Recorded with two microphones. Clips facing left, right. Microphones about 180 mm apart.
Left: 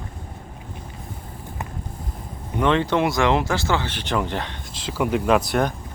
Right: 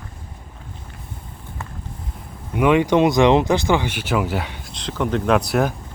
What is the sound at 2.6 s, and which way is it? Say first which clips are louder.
Speech: right 4 dB; 10° right (ahead or behind).